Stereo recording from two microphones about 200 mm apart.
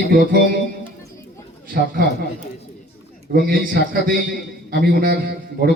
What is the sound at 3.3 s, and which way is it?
A man's voice, 45° right (ahead or behind).